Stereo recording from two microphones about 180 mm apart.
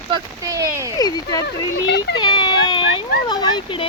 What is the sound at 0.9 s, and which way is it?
Speech, 20° left (ahead or behind).